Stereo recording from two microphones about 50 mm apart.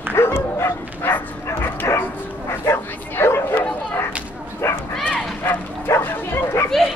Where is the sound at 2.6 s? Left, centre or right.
Left.